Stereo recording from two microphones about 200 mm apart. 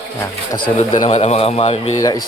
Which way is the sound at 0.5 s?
20° left (ahead or behind).